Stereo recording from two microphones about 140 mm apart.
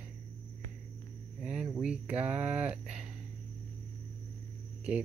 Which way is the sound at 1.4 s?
5° right (ahead or behind).